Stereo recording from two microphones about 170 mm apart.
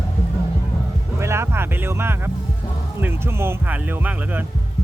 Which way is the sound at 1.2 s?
15° right (ahead or behind).